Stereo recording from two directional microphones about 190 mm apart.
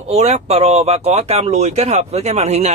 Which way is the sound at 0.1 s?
35° right (ahead or behind).